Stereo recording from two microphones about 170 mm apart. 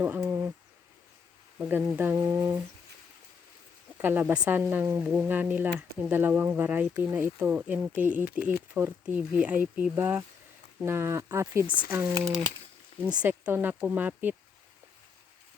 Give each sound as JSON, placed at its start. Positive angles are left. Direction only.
{"t": 0.0, "sound": "speech", "side_deg": -10}
{"t": 1.5, "sound": "speech", "side_deg": -10}
{"t": 3.9, "sound": "speech", "side_deg": -10}